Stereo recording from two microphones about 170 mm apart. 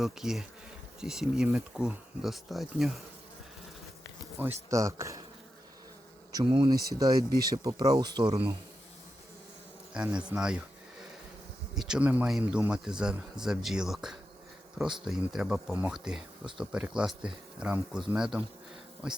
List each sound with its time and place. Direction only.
0.0 s speech: 5° right (ahead or behind)
4.4 s speech: 15° right (ahead or behind)
6.3 s speech: 25° right (ahead or behind)
9.9 s speech: 5° right (ahead or behind)
11.7 s speech: 5° right (ahead or behind)